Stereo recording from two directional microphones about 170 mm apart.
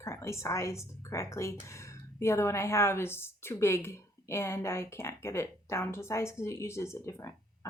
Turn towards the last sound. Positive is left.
turn(degrees=15)  # may be behind; listen again after turning